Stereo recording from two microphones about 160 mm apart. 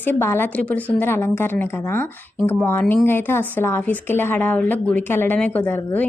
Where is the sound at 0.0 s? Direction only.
15° left (ahead or behind).